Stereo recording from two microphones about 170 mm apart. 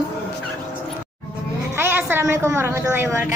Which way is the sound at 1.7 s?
10° right (ahead or behind).